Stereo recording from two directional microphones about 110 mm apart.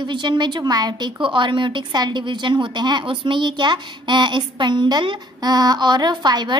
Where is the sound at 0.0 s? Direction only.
45° right (ahead or behind).